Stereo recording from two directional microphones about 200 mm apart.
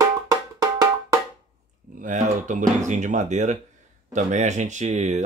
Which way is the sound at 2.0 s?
40° right (ahead or behind).